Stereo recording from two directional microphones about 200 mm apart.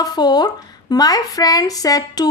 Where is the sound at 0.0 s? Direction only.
20° left (ahead or behind).